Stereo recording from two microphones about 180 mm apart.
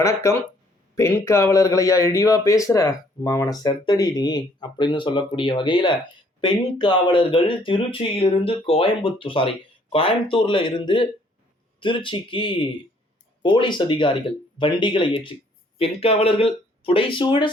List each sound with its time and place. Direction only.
0.0 s speech: 15° left (ahead or behind)